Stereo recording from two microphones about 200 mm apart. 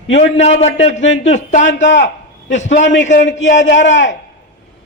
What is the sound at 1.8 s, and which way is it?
A man's voice, 60° left (ahead or behind).